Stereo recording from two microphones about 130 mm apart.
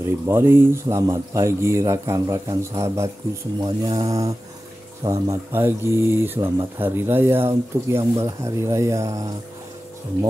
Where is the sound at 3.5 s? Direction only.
35° right (ahead or behind).